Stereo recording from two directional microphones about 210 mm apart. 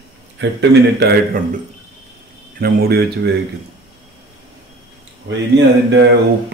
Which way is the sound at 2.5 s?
45° right (ahead or behind).